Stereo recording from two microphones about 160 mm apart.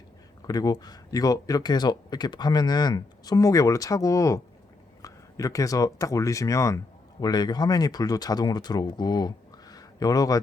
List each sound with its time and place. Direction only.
0.4 s speech: 25° left (ahead or behind)